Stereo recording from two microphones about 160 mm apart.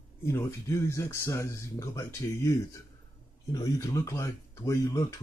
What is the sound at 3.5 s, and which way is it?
Speech, 20° left (ahead or behind).